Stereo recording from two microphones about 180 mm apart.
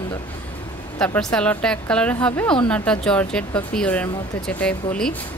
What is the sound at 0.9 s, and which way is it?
Speech, 5° left (ahead or behind).